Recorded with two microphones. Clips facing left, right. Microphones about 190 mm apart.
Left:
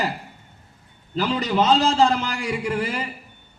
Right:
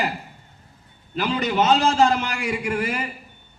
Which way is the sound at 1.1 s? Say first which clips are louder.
Left 1 dB; 35° left (ahead or behind).